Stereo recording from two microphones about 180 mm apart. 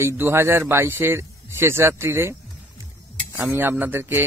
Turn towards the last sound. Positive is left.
turn(degrees=-10)  # may be behind; listen again after turning